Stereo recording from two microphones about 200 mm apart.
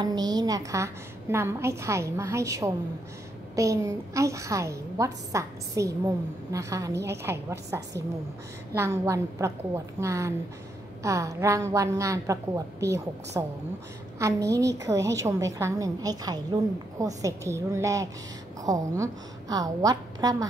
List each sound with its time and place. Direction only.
0.0 s a woman's voice: 20° right (ahead or behind)